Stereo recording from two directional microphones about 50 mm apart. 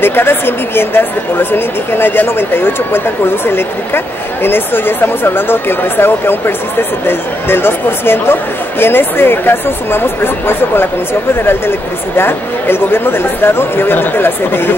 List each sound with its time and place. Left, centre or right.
0.0 s speech: left
12.2 s speech: left